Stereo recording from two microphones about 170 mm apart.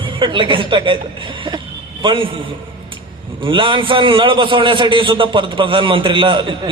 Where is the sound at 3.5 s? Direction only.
30° right (ahead or behind).